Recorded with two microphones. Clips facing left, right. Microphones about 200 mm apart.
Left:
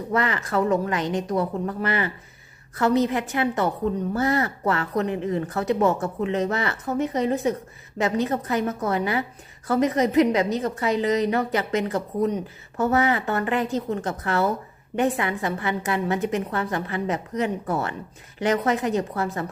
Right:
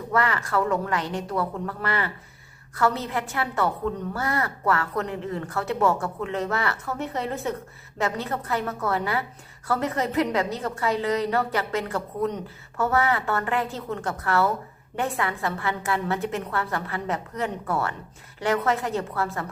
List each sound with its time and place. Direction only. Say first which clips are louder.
0.1 s a woman's voice: even; 20° left (ahead or behind)